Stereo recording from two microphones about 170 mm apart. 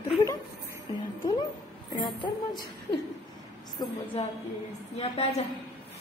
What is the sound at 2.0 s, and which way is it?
Speech, 25° left (ahead or behind).